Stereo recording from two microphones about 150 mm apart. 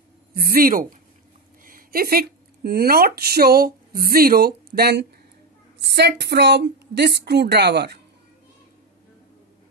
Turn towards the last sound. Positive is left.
turn(degrees=-90)